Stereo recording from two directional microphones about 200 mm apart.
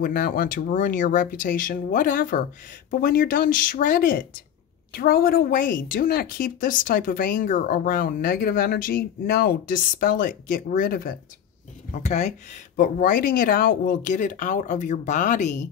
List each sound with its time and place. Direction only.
0.0 s a woman's voice: 45° left (ahead or behind)
11.9 s speech: 35° left (ahead or behind)